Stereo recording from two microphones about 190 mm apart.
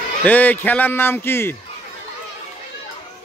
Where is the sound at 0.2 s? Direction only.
10° left (ahead or behind).